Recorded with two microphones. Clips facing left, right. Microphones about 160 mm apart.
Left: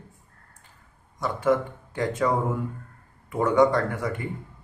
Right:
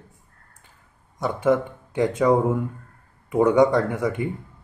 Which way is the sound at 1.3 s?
20° right (ahead or behind).